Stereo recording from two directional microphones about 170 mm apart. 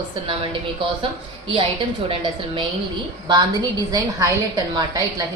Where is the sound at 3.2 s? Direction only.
25° right (ahead or behind).